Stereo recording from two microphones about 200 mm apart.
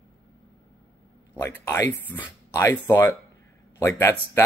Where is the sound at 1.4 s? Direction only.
10° left (ahead or behind).